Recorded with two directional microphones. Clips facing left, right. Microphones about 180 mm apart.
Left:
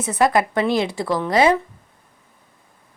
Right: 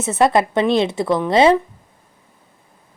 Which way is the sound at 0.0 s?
25° right (ahead or behind).